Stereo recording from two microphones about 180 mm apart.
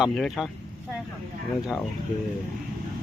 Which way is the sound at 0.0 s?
Centre (ahead or behind).